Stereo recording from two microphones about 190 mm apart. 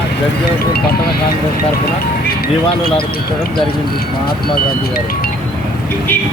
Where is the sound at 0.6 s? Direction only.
55° left (ahead or behind).